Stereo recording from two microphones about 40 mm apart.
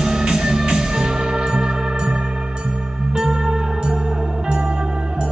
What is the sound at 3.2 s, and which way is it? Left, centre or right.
Music, centre.